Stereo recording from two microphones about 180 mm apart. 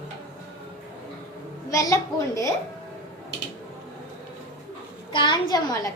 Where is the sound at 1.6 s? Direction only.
20° left (ahead or behind).